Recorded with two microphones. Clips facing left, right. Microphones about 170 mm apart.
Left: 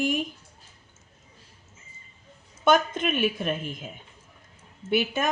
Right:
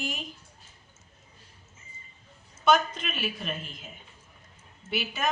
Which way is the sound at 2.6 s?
50° left (ahead or behind).